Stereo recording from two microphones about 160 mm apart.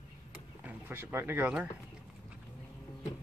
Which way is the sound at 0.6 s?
10° right (ahead or behind).